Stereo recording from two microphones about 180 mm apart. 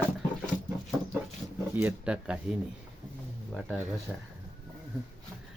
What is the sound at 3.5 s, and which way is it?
Speech, 5° right (ahead or behind).